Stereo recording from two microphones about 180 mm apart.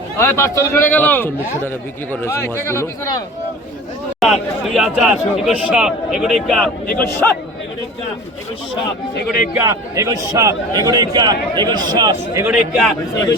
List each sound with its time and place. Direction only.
0.2 s a man's voice: 15° left (ahead or behind)
4.2 s a man's voice: centre (ahead or behind)
6.8 s a man's voice: 50° left (ahead or behind)
9.6 s a man's voice: 15° right (ahead or behind)
12.5 s a man's voice: centre (ahead or behind)